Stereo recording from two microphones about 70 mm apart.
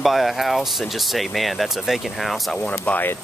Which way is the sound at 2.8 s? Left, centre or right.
Left.